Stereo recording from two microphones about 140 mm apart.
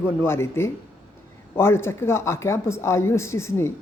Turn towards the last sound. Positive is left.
turn(degrees=20)  # may be behind; listen again after turning